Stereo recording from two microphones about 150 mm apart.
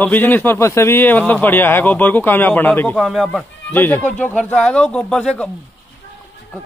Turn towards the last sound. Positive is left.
turn(degrees=5)  # may be behind; listen again after turning